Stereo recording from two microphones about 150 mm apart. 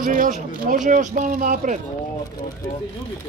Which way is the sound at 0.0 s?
60° right (ahead or behind).